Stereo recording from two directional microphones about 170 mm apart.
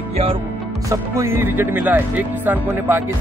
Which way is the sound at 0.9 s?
15° right (ahead or behind).